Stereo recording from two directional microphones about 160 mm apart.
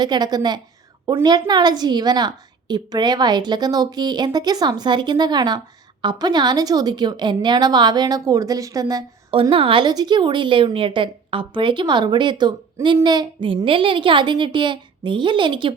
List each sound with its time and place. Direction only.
0.0 s a woman's voice: 25° right (ahead or behind)
9.3 s a woman's voice: 35° right (ahead or behind)